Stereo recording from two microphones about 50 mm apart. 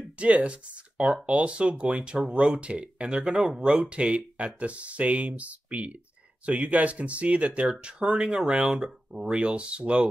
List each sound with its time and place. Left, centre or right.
0.2 s speech: right